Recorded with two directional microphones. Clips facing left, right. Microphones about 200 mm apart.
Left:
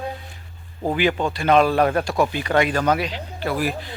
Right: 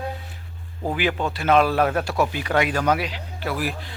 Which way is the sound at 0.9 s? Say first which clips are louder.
Left 3 dB; centre (ahead or behind).